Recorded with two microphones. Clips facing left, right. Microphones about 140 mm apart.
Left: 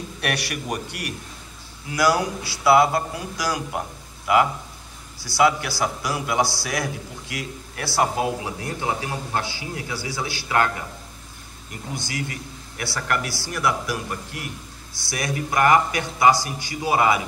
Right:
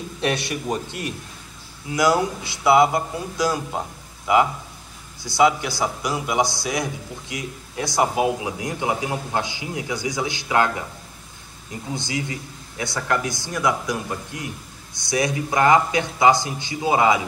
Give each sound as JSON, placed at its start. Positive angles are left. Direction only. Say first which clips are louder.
{"t": 0.2, "sound": "a man's voice", "louder": "right 4 dB", "side_deg": -20}
{"t": 11.9, "sound": "a man's voice", "louder": "right 3 dB", "side_deg": -20}